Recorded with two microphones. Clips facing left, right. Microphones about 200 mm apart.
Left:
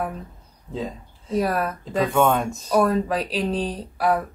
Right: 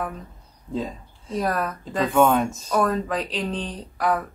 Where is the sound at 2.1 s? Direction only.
10° right (ahead or behind).